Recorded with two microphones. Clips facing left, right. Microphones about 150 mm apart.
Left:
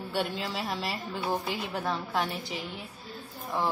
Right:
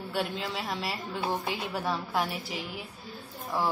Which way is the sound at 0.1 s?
Centre (ahead or behind).